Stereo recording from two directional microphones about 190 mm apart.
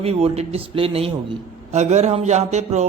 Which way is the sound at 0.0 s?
30° right (ahead or behind).